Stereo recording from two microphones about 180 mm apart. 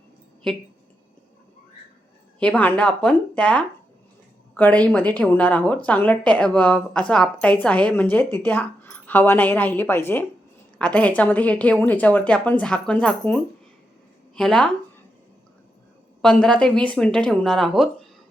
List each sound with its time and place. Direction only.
0.4 s speech: 5° left (ahead or behind)
2.4 s a woman's voice: 10° left (ahead or behind)
16.2 s speech: 5° left (ahead or behind)